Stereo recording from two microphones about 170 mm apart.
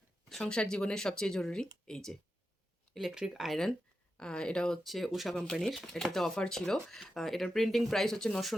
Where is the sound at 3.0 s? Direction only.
Centre (ahead or behind).